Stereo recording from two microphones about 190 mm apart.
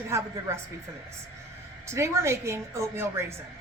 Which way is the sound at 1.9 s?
15° right (ahead or behind).